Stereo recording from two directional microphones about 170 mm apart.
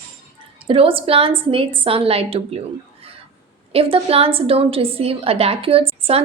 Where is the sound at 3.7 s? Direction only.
35° right (ahead or behind).